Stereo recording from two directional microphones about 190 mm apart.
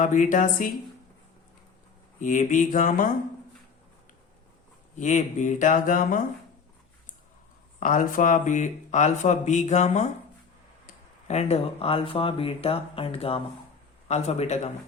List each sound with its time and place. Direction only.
0.0 s speech: 40° left (ahead or behind)
2.1 s speech: 40° left (ahead or behind)
4.9 s speech: 40° left (ahead or behind)
7.8 s speech: 45° left (ahead or behind)
11.3 s speech: 35° left (ahead or behind)